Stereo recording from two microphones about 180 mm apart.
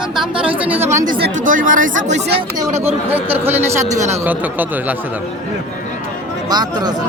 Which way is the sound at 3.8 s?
40° right (ahead or behind).